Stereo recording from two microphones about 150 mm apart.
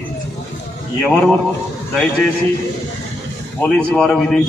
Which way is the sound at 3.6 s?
10° left (ahead or behind).